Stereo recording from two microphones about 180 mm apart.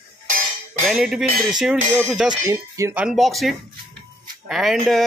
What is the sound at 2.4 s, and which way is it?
Speech, 15° right (ahead or behind).